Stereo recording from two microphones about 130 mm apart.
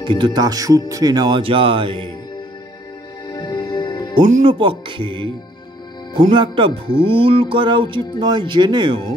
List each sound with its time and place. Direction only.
0.0 s speech: 40° right (ahead or behind)
3.3 s music: 30° left (ahead or behind)
4.5 s speech: 40° right (ahead or behind)
6.3 s speech: 40° right (ahead or behind)
7.0 s music: 45° right (ahead or behind)
8.2 s speech: 35° right (ahead or behind)